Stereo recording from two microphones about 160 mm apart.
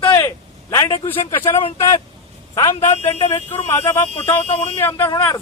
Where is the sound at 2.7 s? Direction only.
40° left (ahead or behind).